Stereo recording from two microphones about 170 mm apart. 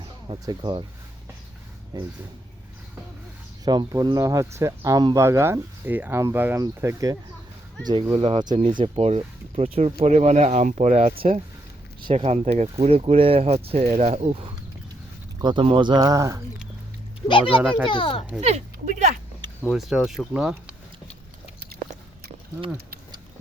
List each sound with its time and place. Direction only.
0.0 s speech: 30° right (ahead or behind)
1.9 s speech: 25° right (ahead or behind)
3.6 s speech: 25° right (ahead or behind)
17.2 s a child's voice: 30° left (ahead or behind)
18.3 s speech: 40° right (ahead or behind)
19.7 s speech: centre (ahead or behind)